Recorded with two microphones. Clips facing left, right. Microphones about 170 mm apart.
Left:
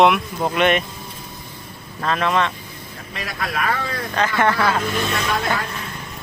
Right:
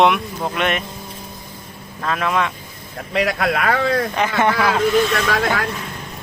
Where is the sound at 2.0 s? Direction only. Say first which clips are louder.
Left 1 dB; 5° right (ahead or behind).